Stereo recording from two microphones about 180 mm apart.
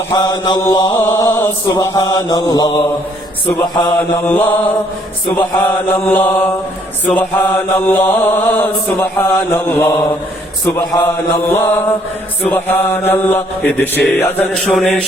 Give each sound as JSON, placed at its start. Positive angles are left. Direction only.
{"t": 0.1, "sound": "mantra", "side_deg": 20}